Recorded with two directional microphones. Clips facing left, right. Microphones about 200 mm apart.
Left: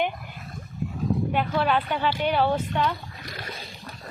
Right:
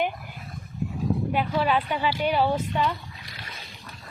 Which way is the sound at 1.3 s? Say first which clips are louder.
Right 1 dB; 5° right (ahead or behind).